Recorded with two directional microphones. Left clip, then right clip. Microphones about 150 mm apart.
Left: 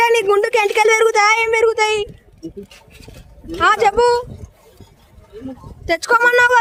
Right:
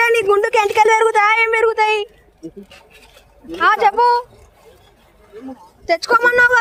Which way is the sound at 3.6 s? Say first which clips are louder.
Even; 65° left (ahead or behind).